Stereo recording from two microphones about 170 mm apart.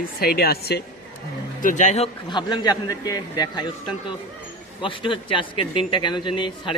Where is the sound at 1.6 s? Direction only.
50° left (ahead or behind).